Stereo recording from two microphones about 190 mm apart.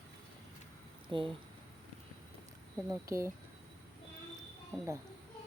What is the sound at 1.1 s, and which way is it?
Speech, 25° right (ahead or behind).